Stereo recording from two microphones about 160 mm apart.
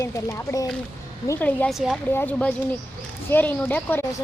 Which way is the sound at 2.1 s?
10° left (ahead or behind).